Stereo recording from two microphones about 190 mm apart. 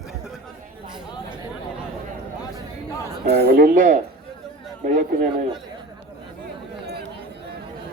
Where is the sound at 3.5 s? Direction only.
45° right (ahead or behind).